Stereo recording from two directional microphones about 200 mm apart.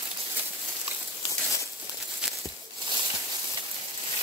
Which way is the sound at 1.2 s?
15° left (ahead or behind).